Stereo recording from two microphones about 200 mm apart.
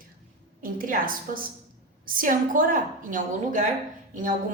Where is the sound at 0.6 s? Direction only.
45° right (ahead or behind).